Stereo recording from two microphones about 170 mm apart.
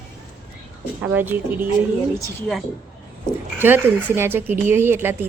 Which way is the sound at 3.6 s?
10° right (ahead or behind).